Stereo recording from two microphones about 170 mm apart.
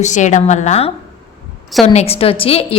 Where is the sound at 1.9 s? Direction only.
35° left (ahead or behind).